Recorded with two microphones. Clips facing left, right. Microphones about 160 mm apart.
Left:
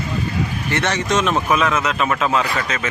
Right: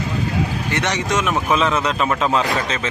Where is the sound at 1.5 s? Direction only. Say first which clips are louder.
Even; 30° right (ahead or behind).